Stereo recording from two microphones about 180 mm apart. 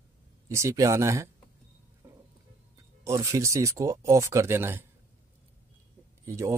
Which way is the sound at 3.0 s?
15° right (ahead or behind).